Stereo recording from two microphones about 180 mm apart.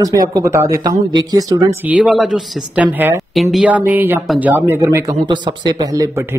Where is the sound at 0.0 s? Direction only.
20° right (ahead or behind).